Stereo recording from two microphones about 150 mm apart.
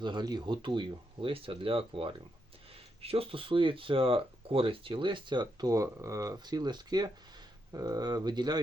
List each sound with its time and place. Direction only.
0.0 s speech: 30° right (ahead or behind)